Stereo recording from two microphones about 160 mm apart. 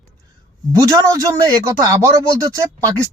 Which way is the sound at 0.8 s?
20° right (ahead or behind).